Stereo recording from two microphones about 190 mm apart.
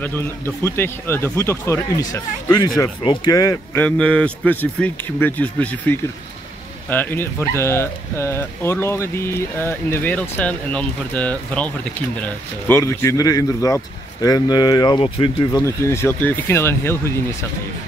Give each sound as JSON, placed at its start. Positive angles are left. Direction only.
{"t": 0.0, "sound": "speech", "side_deg": 10}
{"t": 15.6, "sound": "speech", "side_deg": 15}